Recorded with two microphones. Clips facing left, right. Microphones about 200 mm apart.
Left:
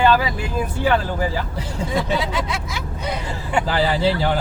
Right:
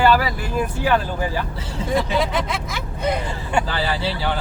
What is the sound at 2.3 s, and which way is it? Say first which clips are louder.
Speech: right 1 dB; 55° right (ahead or behind).